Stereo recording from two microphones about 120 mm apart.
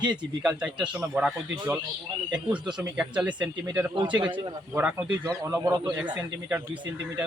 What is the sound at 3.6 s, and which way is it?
Speech, 25° right (ahead or behind).